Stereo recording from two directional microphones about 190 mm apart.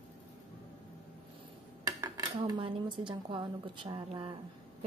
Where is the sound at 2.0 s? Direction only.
20° right (ahead or behind).